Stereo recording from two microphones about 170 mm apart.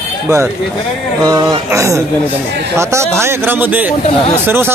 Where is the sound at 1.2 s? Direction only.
20° right (ahead or behind).